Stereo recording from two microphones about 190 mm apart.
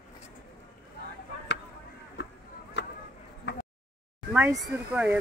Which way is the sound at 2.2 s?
65° left (ahead or behind).